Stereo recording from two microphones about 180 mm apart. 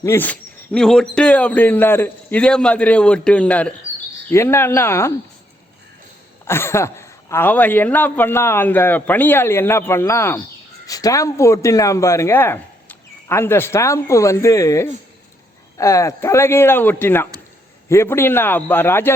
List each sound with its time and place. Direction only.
0.0 s speech: 15° left (ahead or behind)
6.4 s a man's voice: 15° left (ahead or behind)